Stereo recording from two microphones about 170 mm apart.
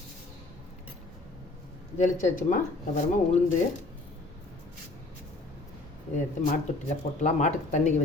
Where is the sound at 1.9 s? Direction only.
50° left (ahead or behind).